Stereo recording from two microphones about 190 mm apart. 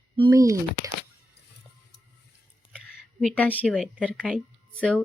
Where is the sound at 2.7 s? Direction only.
5° left (ahead or behind).